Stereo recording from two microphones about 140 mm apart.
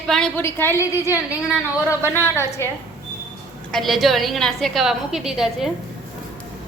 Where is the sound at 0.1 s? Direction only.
5° left (ahead or behind).